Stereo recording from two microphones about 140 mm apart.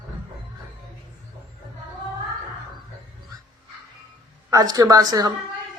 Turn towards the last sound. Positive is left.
turn(degrees=-25)  # may be behind; listen again after turning